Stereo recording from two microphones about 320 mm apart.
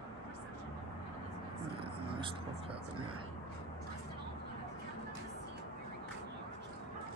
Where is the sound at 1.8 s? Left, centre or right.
Centre.